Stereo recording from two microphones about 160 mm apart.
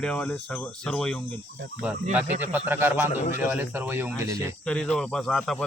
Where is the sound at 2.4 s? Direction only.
10° right (ahead or behind).